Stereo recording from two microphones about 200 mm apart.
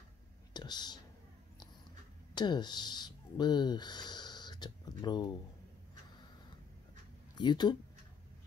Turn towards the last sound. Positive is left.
turn(degrees=20)  # may be behind; listen again after turning